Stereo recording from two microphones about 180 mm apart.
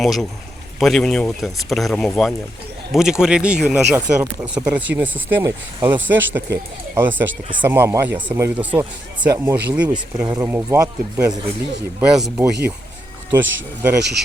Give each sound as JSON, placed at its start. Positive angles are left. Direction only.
{"t": 0.0, "sound": "speech", "side_deg": 0}
{"t": 11.9, "sound": "speech", "side_deg": -5}